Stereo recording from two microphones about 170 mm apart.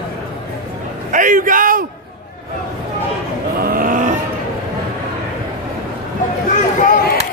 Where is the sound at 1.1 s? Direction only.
50° right (ahead or behind).